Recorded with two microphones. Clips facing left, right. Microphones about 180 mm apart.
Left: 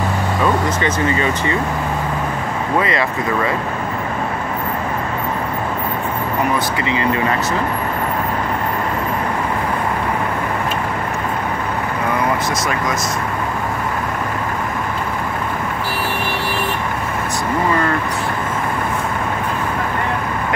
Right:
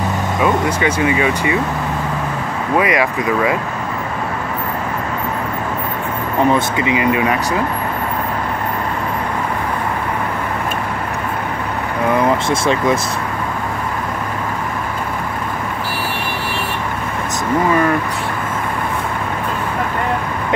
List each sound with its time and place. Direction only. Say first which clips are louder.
0.4 s speech: right 2 dB; 10° right (ahead or behind)
2.8 s speech: right 3 dB; 15° right (ahead or behind)
6.8 s speech: right 3 dB; 15° right (ahead or behind)
12.4 s speech: right 5 dB; 30° right (ahead or behind)